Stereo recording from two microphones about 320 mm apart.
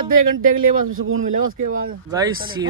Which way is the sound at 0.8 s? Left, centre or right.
Right.